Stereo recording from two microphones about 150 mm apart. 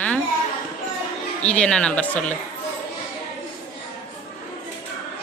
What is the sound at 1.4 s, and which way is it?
Speech, 5° left (ahead or behind).